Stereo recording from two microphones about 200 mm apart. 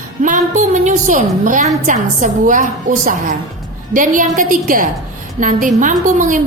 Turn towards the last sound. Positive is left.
turn(degrees=-40)  # may be behind; listen again after turning